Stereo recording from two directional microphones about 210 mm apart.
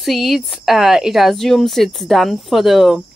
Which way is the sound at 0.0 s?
Centre (ahead or behind).